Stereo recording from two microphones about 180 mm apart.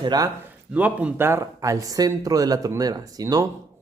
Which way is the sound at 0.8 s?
10° right (ahead or behind).